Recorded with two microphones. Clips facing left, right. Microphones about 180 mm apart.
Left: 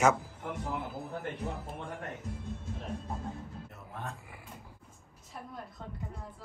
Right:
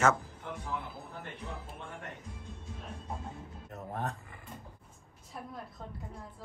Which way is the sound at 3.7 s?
40° right (ahead or behind).